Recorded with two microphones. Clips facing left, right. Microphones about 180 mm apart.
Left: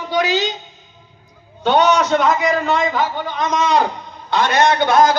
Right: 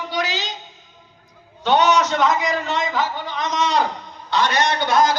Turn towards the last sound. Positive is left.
turn(degrees=50)  # may be behind; listen again after turning